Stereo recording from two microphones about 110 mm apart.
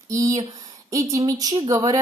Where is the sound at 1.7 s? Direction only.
35° right (ahead or behind).